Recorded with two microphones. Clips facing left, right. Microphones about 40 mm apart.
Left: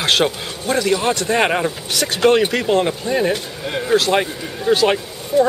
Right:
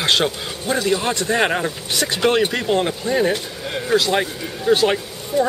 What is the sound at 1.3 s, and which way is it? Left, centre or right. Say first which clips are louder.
Speech: left 1 dB; centre.